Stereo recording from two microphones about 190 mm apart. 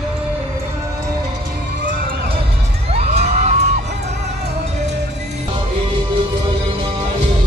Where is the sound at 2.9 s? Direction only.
35° right (ahead or behind).